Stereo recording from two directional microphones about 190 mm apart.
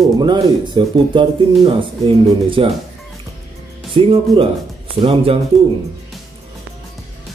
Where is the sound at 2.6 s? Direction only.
30° right (ahead or behind).